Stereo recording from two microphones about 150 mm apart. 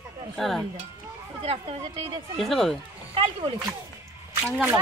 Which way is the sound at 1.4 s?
40° right (ahead or behind).